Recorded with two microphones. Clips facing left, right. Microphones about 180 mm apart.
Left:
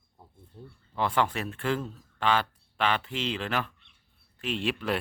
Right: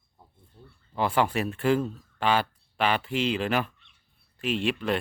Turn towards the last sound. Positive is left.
turn(degrees=0)  # may be behind; listen again after turning